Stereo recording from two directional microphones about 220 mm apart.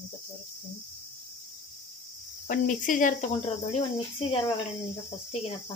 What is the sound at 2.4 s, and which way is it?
Speech, 35° left (ahead or behind).